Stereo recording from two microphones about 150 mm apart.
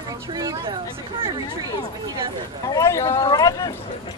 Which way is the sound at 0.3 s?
25° right (ahead or behind).